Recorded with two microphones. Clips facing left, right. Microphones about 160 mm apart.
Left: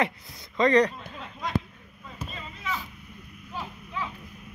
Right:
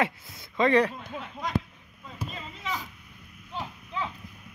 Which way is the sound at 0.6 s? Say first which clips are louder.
Left 1 dB; 5° right (ahead or behind).